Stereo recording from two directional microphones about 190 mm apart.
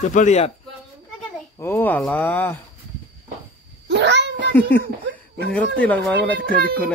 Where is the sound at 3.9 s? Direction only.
65° right (ahead or behind).